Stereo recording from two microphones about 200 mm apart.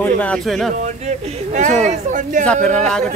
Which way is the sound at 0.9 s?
35° right (ahead or behind).